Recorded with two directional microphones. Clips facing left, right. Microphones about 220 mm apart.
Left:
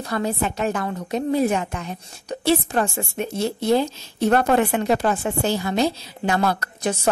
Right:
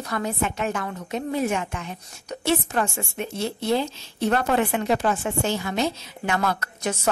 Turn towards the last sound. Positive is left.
turn(degrees=35)  # may be behind; listen again after turning